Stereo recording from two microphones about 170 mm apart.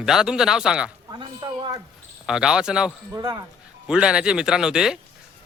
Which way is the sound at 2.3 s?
5° right (ahead or behind).